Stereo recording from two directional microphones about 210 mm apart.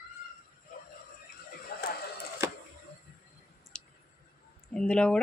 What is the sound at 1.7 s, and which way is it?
Horse, 45° left (ahead or behind).